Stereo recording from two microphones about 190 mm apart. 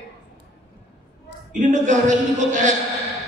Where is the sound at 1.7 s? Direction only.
40° right (ahead or behind).